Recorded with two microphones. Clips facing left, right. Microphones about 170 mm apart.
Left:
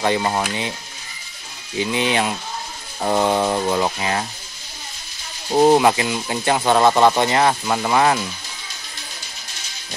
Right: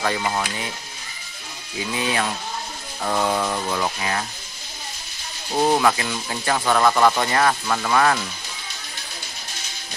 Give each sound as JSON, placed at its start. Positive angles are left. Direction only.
{"t": 0.0, "sound": "speech", "side_deg": 25}
{"t": 1.8, "sound": "speech", "side_deg": 25}
{"t": 5.5, "sound": "speech", "side_deg": 25}